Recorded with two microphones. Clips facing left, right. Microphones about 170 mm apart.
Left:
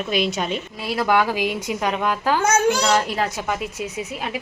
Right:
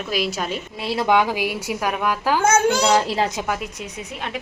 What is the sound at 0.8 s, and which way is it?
A woman's voice, 25° right (ahead or behind).